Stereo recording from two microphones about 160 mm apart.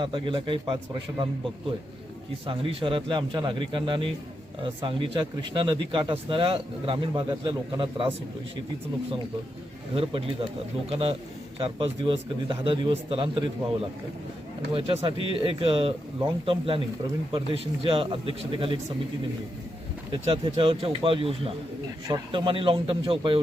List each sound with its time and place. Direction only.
0.0 s speech: 30° right (ahead or behind)
2.5 s speech: 35° right (ahead or behind)
9.9 s speech: 35° right (ahead or behind)
20.2 s speech: 35° right (ahead or behind)